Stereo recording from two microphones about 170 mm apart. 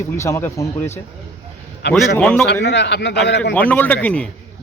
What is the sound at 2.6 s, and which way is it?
Speech, 90° left.